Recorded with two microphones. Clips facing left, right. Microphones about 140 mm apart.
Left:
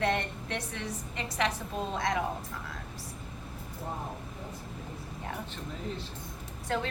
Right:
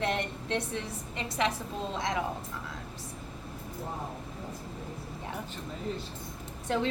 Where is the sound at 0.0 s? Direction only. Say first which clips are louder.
Left 1 dB; 25° right (ahead or behind).